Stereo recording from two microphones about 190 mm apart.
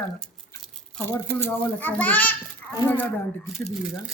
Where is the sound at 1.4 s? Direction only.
10° left (ahead or behind).